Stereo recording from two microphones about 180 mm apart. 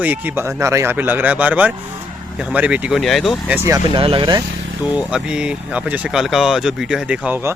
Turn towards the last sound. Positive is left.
turn(degrees=-10)  # may be behind; listen again after turning